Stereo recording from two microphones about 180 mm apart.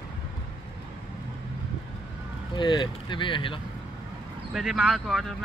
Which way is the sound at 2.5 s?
25° left (ahead or behind).